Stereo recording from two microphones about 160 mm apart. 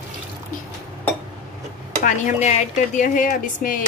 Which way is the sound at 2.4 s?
50° left (ahead or behind).